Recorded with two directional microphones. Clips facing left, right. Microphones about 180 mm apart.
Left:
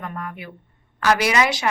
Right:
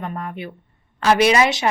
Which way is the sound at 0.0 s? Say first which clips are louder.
Right 3 dB; 25° right (ahead or behind).